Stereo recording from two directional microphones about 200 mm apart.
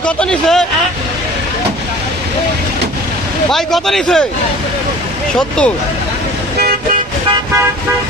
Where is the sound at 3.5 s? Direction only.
Centre (ahead or behind).